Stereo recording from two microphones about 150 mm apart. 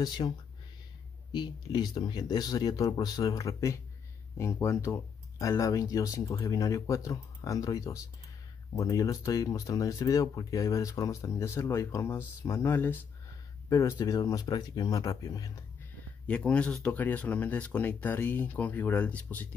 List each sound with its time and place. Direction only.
0.2 s speech: 25° left (ahead or behind)
16.3 s speech: 10° left (ahead or behind)